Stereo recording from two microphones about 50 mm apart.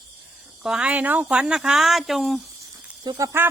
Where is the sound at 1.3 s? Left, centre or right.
Centre.